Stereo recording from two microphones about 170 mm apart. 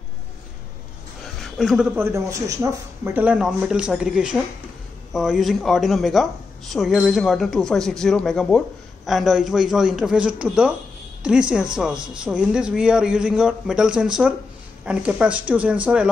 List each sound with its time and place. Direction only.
1.6 s speech: centre (ahead or behind)
2.0 s speech: 15° right (ahead or behind)
3.0 s speech: 10° right (ahead or behind)